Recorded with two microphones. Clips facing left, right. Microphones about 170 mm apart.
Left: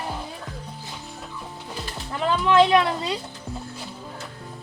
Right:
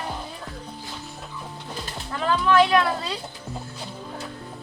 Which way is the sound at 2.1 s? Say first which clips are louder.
Even; 20° left (ahead or behind).